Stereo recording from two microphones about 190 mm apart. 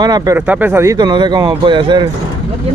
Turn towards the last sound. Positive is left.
turn(degrees=-25)  # may be behind; listen again after turning